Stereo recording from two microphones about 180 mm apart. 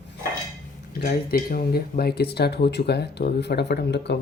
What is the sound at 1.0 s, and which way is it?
Speech, 55° left (ahead or behind).